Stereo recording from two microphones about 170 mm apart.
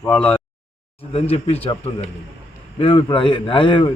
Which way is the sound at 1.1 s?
35° left (ahead or behind).